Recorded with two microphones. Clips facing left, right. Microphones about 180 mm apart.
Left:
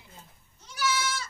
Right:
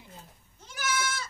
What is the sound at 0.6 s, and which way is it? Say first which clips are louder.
Goat: left 2 dB; 50° right (ahead or behind).